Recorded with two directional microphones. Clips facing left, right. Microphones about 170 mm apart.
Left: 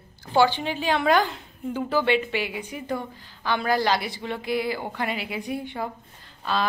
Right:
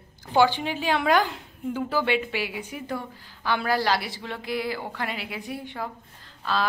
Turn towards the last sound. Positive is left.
turn(degrees=0)  # may be behind; listen again after turning